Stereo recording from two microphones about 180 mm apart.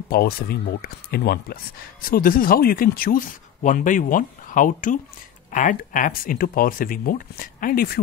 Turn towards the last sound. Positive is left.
turn(degrees=55)  # may be behind; listen again after turning